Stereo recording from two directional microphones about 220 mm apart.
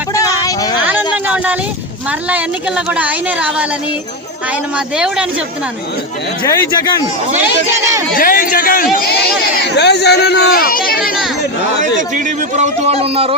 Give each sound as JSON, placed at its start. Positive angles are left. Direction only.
{"t": 0.1, "sound": "a sound", "side_deg": 15}
{"t": 0.9, "sound": "a sound", "side_deg": -5}
{"t": 2.3, "sound": "speech", "side_deg": -5}
{"t": 4.9, "sound": "speech", "side_deg": -5}
{"t": 6.4, "sound": "speech", "side_deg": 15}
{"t": 7.3, "sound": "speech", "side_deg": -15}
{"t": 8.1, "sound": "a man's voice", "side_deg": 40}
{"t": 11.9, "sound": "speech", "side_deg": -35}